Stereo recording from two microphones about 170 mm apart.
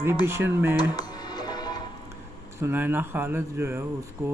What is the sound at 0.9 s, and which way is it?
Music, 25° left (ahead or behind).